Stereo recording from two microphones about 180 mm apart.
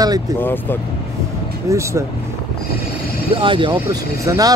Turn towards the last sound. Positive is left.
turn(degrees=-20)  # may be behind; listen again after turning